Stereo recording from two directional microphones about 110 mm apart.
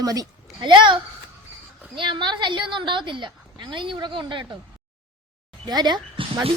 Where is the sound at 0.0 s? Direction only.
35° right (ahead or behind).